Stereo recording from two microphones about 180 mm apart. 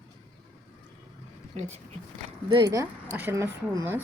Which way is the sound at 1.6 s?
35° right (ahead or behind).